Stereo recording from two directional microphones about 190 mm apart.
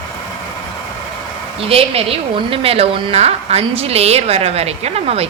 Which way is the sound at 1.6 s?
30° right (ahead or behind).